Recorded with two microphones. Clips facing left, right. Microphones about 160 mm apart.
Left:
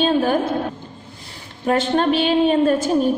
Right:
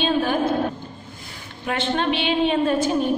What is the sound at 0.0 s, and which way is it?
Speech, 45° left (ahead or behind).